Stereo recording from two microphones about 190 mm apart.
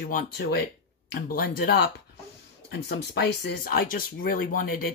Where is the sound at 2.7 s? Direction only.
60° left (ahead or behind).